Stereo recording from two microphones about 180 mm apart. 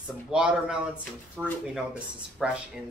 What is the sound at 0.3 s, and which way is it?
Speech, 5° right (ahead or behind).